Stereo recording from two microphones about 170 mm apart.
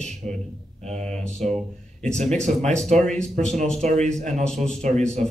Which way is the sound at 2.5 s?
50° right (ahead or behind).